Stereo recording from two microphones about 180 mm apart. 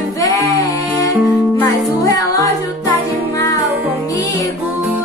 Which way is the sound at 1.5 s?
15° left (ahead or behind).